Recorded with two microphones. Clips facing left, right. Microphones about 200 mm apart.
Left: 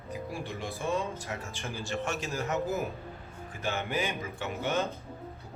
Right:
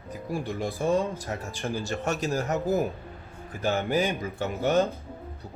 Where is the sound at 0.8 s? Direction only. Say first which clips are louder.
Right 7 dB; 40° right (ahead or behind).